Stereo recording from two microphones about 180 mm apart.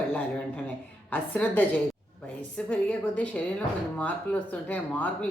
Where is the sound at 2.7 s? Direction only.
5° left (ahead or behind).